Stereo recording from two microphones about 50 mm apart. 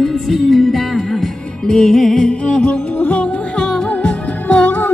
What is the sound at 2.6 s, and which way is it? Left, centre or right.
Music, left.